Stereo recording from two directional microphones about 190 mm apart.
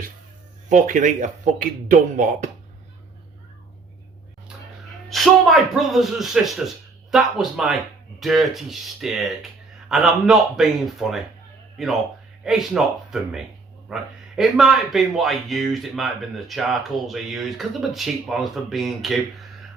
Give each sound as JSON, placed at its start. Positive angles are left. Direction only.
{"t": 0.7, "sound": "speech", "side_deg": -40}
{"t": 5.0, "sound": "speech", "side_deg": 0}